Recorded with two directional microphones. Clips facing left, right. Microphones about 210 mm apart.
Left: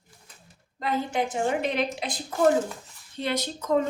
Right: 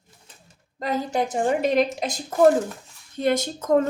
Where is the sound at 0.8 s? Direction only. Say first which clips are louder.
Right 3 dB; 40° right (ahead or behind).